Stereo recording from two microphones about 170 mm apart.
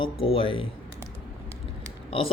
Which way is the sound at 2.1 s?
35° left (ahead or behind).